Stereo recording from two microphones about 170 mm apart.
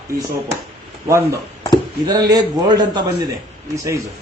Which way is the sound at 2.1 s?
25° right (ahead or behind).